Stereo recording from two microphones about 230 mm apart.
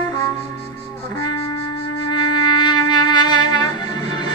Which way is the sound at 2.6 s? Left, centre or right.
Centre.